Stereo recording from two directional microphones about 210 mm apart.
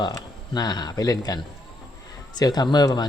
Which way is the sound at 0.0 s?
20° left (ahead or behind).